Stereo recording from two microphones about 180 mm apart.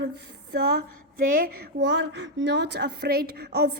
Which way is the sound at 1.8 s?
75° right (ahead or behind).